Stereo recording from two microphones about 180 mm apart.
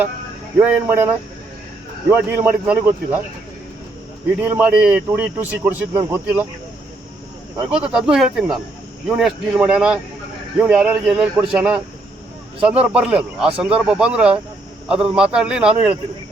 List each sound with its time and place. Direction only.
0.6 s a man's voice: 10° right (ahead or behind)
4.4 s a man's voice: 10° right (ahead or behind)
7.7 s speech: 5° right (ahead or behind)
12.9 s speech: 5° right (ahead or behind)